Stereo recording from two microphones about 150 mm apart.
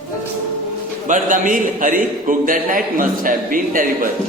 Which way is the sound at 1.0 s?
60° right (ahead or behind).